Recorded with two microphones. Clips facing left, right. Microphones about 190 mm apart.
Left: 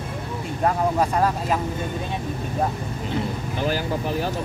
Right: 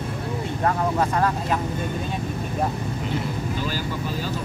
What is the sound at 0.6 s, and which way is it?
Speech, 15° left (ahead or behind).